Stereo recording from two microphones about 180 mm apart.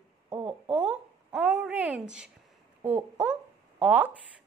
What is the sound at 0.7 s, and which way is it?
A woman's voice, 5° right (ahead or behind).